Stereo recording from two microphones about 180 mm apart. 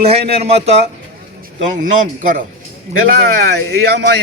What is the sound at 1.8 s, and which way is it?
Speech, 45° right (ahead or behind).